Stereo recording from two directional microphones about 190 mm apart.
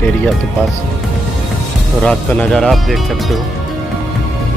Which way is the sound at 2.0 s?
5° left (ahead or behind).